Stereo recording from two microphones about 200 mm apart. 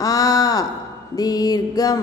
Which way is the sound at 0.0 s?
20° left (ahead or behind).